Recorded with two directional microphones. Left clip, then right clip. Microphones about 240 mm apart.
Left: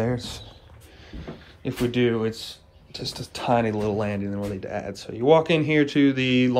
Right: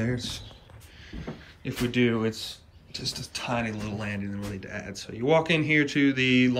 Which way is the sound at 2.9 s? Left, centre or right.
Left.